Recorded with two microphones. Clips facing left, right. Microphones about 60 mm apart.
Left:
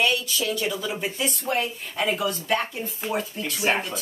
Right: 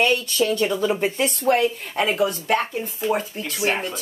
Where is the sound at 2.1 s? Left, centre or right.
Right.